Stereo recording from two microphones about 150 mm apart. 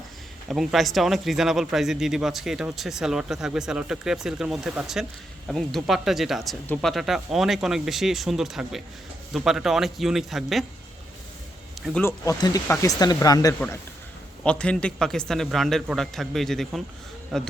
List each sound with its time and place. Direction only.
0.4 s speech: centre (ahead or behind)
12.0 s speech: 20° left (ahead or behind)
14.4 s a man's voice: 5° left (ahead or behind)